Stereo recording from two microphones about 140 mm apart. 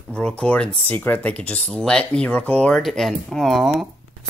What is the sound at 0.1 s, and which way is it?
Speech, 5° left (ahead or behind).